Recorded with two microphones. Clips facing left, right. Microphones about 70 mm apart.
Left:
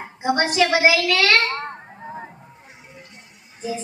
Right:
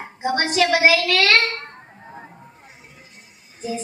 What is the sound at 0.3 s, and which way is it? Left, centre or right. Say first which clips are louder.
Speech: even; left.